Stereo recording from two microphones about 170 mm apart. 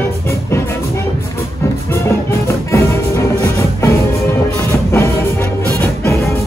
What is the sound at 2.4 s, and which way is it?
Music, 15° left (ahead or behind).